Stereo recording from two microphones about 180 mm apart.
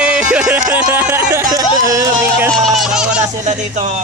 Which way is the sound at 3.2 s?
40° right (ahead or behind).